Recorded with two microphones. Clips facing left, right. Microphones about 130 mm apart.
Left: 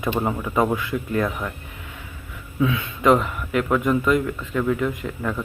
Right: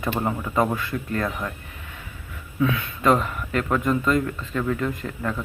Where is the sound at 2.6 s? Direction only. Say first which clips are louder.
Left 1 dB; 15° left (ahead or behind).